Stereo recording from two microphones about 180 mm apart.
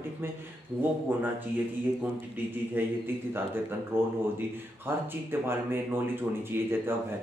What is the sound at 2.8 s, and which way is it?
Speech, 10° right (ahead or behind).